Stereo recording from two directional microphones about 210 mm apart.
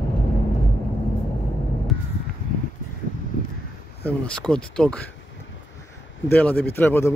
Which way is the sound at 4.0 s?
5° left (ahead or behind).